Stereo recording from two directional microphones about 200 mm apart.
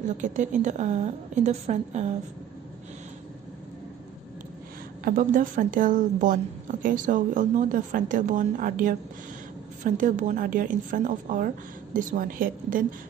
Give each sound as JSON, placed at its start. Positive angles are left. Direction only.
{"t": 0.2, "sound": "a woman's voice", "side_deg": -40}
{"t": 5.0, "sound": "a woman's voice", "side_deg": -45}